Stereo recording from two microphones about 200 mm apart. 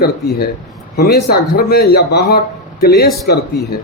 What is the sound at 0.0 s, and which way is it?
Speech, 50° left (ahead or behind).